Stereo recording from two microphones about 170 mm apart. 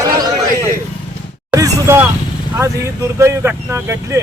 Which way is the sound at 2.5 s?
15° right (ahead or behind).